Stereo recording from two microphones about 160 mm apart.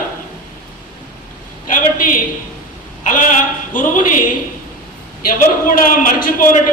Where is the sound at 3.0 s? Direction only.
55° left (ahead or behind).